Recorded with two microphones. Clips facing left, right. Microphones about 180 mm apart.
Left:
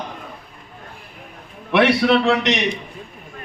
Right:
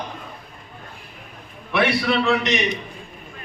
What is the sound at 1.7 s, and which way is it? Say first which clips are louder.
Speech: left 5 dB; 70° left (ahead or behind).